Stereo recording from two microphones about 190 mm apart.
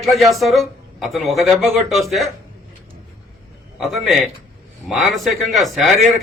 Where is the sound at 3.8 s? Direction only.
Centre (ahead or behind).